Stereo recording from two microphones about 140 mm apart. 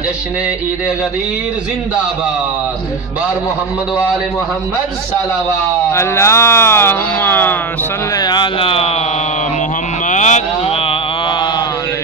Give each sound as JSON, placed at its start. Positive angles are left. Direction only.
{"t": 5.9, "sound": "speech", "side_deg": 20}
{"t": 8.1, "sound": "speech", "side_deg": 30}
{"t": 10.0, "sound": "sheep", "side_deg": 60}